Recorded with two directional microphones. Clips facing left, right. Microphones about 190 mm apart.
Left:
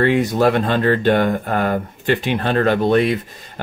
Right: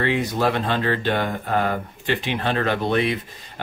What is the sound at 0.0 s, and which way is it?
Speech, 50° left (ahead or behind).